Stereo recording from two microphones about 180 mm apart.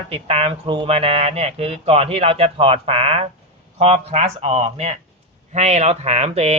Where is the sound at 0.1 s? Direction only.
35° right (ahead or behind).